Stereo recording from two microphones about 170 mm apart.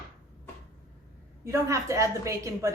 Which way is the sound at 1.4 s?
15° right (ahead or behind).